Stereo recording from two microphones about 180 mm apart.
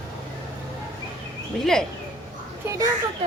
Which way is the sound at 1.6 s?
Centre (ahead or behind).